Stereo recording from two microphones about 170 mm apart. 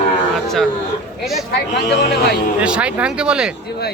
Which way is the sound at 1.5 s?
80° left.